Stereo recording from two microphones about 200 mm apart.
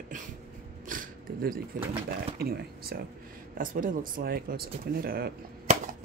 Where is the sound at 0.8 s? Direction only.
45° right (ahead or behind).